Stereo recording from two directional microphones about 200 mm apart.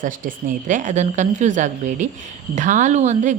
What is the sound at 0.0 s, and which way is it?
Speech, 40° right (ahead or behind).